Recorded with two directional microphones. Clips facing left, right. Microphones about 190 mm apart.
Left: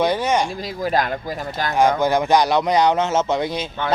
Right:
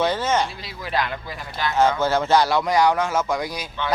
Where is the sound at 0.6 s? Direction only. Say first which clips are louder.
Left 5 dB; 45° left (ahead or behind).